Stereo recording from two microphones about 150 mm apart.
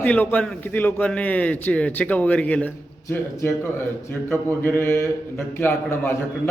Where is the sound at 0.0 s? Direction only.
10° left (ahead or behind).